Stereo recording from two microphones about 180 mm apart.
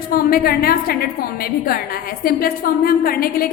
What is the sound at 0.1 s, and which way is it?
A woman's voice, 55° left (ahead or behind).